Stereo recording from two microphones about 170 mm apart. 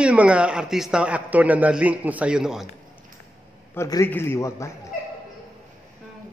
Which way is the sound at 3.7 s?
15° left (ahead or behind).